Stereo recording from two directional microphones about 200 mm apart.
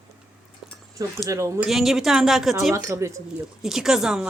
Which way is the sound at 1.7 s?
Centre (ahead or behind).